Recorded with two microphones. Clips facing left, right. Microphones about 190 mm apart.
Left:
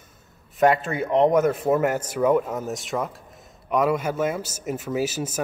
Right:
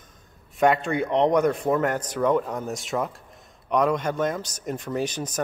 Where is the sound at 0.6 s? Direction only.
Centre (ahead or behind).